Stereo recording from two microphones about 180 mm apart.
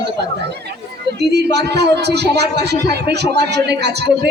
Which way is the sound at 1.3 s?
65° right (ahead or behind).